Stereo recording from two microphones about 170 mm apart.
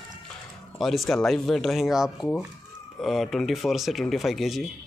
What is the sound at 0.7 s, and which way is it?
Speech, centre (ahead or behind).